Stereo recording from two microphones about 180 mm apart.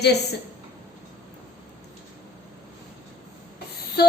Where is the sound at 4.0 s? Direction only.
60° left (ahead or behind).